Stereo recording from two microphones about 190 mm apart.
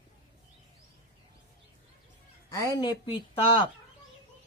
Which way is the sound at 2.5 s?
20° left (ahead or behind).